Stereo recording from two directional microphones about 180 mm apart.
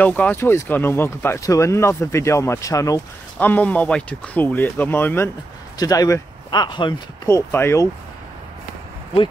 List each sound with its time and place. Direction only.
0.0 s speech: 10° left (ahead or behind); by 7.0 s 25° left (ahead or behind)
7.2 s speech: 15° left (ahead or behind)